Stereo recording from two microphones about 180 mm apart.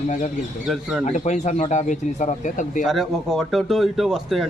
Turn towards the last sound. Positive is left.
turn(degrees=0)  # may be behind; listen again after turning